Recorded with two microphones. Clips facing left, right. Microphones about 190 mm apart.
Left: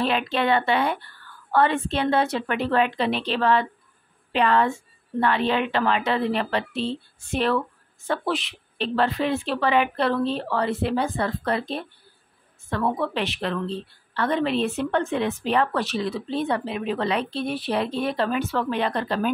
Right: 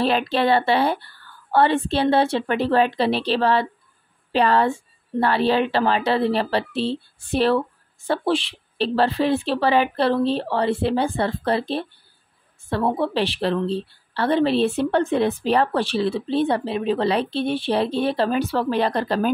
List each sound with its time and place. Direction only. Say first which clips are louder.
0.0 s a woman's voice: right 3 dB; 35° right (ahead or behind)